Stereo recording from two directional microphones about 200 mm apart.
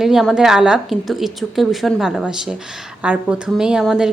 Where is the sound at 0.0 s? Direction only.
Centre (ahead or behind).